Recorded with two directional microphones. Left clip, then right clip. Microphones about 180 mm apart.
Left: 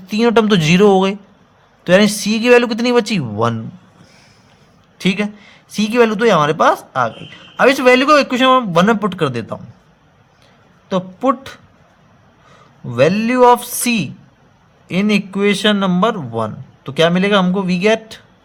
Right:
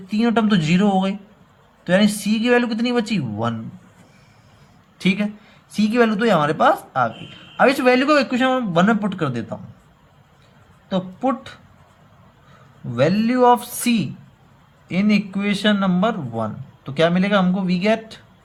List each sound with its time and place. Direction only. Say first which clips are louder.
0.1 s a man's voice: left 7 dB; 50° left (ahead or behind)
4.9 s a man's voice: left 4 dB; 35° left (ahead or behind)
10.8 s speech: left 6 dB; 40° left (ahead or behind)
12.9 s a man's voice: left 5 dB; 40° left (ahead or behind)